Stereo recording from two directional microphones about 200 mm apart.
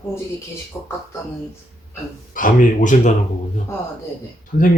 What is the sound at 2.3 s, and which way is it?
Speech, 40° left (ahead or behind).